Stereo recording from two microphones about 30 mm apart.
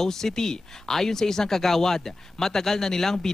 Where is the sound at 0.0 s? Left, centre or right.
Centre.